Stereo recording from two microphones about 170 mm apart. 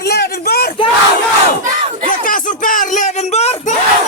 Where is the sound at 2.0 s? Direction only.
55° left (ahead or behind).